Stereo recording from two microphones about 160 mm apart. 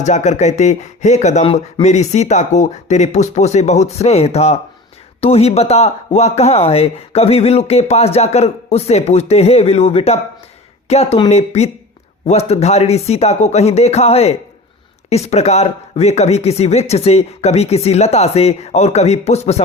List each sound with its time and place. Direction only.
0.0 s speech: 45° left (ahead or behind)